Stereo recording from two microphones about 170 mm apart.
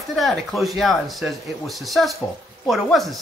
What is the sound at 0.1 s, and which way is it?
Speech, centre (ahead or behind).